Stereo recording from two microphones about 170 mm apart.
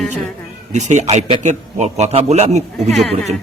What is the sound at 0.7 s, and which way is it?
A man's voice, 45° right (ahead or behind).